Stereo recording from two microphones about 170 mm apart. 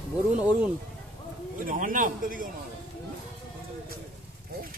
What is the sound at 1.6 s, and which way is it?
Speech, 50° right (ahead or behind).